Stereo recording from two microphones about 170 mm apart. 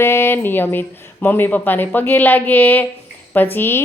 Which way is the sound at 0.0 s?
15° left (ahead or behind).